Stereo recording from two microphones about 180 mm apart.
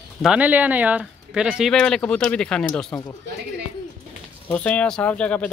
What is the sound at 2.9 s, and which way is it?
Speech, 20° left (ahead or behind).